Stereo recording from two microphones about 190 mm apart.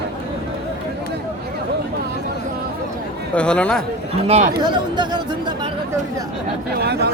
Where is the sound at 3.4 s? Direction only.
5° left (ahead or behind).